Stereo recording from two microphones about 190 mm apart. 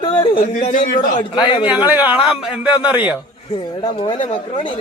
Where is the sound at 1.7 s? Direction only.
10° right (ahead or behind).